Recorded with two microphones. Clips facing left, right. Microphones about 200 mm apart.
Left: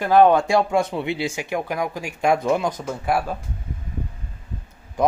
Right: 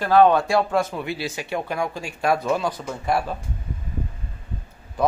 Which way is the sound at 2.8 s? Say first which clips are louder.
Left 1 dB; 5° left (ahead or behind).